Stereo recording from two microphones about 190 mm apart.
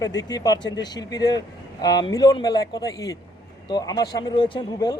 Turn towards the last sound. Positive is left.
turn(degrees=20)  # may be behind; listen again after turning